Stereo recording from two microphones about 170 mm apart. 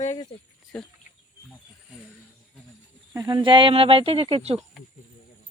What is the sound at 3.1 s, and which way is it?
Speech, 25° right (ahead or behind).